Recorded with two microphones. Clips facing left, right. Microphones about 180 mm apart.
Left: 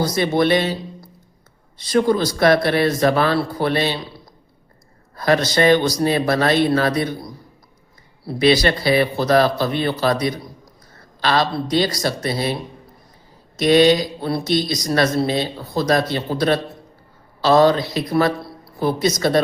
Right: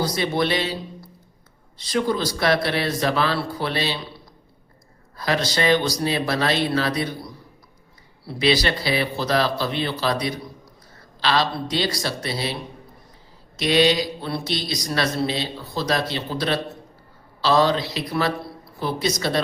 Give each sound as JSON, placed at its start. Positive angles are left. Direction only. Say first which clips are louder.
{"t": 0.0, "sound": "speech", "louder": "left 5 dB", "side_deg": 45}
{"t": 1.8, "sound": "speech", "louder": "left 6 dB", "side_deg": 50}
{"t": 5.1, "sound": "a man's voice", "louder": "left 6 dB", "side_deg": 50}
{"t": 8.3, "sound": "speech", "louder": "left 5 dB", "side_deg": 50}
{"t": 13.6, "sound": "speech", "louder": "left 5 dB", "side_deg": 50}